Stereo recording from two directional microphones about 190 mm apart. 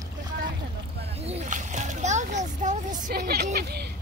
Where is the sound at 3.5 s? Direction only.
60° right (ahead or behind).